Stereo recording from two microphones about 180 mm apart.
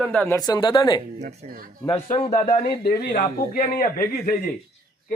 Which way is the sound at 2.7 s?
60° left (ahead or behind).